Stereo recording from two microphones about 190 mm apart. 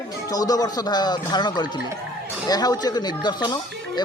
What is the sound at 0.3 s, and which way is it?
Speech, 20° left (ahead or behind).